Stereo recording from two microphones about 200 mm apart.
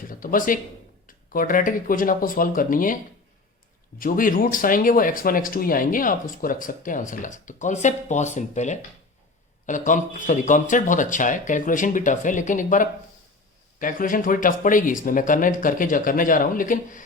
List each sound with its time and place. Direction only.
0.1 s speech: 45° left (ahead or behind)
4.0 s speech: 45° left (ahead or behind)